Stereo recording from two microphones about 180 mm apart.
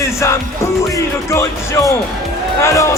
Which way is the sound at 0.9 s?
15° left (ahead or behind).